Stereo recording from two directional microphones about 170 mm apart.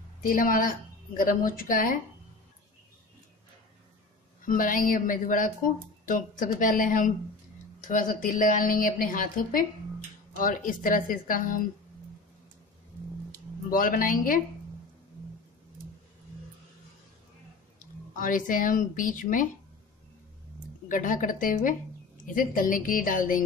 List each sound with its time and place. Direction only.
0.2 s a woman's voice: 55° left (ahead or behind)
4.5 s a woman's voice: 55° left (ahead or behind)
13.7 s speech: 55° left (ahead or behind)
18.1 s a woman's voice: 50° left (ahead or behind)
20.9 s a woman's voice: 50° left (ahead or behind)